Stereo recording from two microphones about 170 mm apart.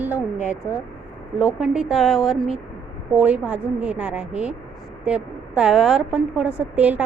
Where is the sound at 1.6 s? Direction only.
5° right (ahead or behind).